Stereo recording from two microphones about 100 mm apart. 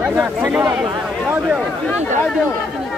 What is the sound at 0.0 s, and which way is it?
Speech, 10° right (ahead or behind).